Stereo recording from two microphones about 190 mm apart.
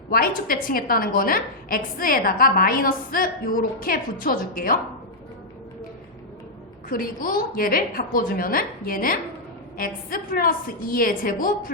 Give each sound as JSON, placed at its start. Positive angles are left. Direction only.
{"t": 0.1, "sound": "a woman's voice", "side_deg": 50}
{"t": 6.8, "sound": "a woman's voice", "side_deg": 50}